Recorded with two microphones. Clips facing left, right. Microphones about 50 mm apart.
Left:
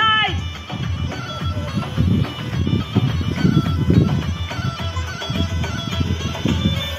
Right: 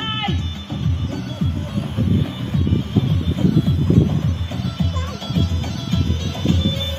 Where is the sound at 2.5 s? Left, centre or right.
Left.